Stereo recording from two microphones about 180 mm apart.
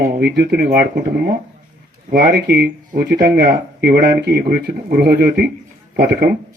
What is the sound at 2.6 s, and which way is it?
Speech, 65° right (ahead or behind).